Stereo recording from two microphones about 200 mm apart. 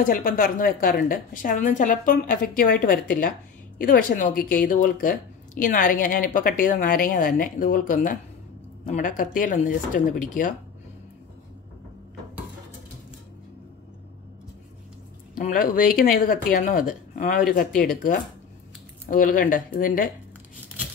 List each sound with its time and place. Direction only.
0.0 s a woman's voice: 45° left (ahead or behind)
15.3 s a woman's voice: 45° left (ahead or behind)
19.0 s a woman's voice: 45° left (ahead or behind)